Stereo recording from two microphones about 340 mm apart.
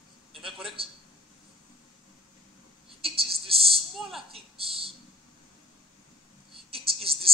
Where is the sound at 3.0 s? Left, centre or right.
Centre.